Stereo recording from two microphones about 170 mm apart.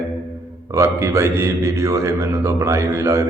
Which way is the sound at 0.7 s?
15° right (ahead or behind).